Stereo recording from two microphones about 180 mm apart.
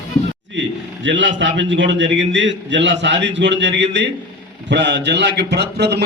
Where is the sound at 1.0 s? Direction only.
90° right.